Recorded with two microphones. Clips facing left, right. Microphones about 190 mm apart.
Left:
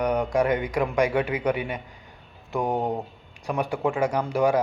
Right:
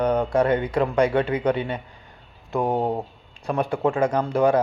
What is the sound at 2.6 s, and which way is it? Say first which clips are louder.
Speech: right 3 dB; 30° right (ahead or behind).